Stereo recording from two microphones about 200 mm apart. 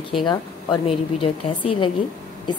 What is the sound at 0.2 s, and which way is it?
A woman's voice, 25° left (ahead or behind).